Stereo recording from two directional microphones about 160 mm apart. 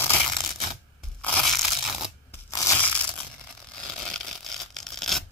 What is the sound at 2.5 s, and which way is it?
Crushing, 20° left (ahead or behind).